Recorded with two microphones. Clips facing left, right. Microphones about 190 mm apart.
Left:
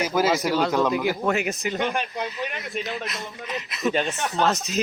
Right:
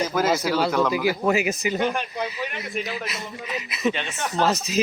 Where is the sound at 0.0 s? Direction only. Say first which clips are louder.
Even; 10° left (ahead or behind).